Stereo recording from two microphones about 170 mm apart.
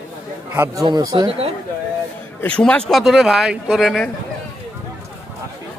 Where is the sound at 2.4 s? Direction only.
5° left (ahead or behind).